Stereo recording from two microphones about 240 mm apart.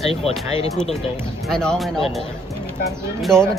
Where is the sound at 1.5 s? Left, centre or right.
Centre.